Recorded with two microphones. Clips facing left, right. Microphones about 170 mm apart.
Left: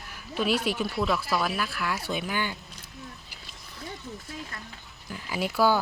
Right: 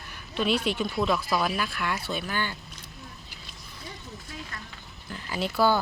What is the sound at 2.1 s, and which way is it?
Speech, 15° left (ahead or behind).